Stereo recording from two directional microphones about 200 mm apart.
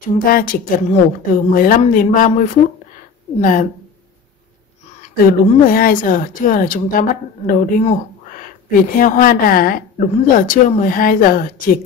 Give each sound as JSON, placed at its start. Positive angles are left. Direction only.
{"t": 0.2, "sound": "a woman's voice", "side_deg": 45}
{"t": 5.0, "sound": "a woman's voice", "side_deg": 45}